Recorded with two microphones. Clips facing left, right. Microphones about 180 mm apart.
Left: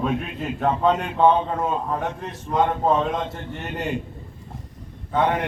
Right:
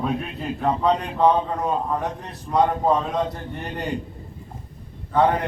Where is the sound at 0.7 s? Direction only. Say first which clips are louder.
Even; 35° right (ahead or behind).